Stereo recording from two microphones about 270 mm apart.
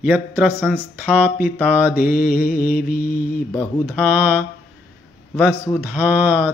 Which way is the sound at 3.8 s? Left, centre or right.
Centre.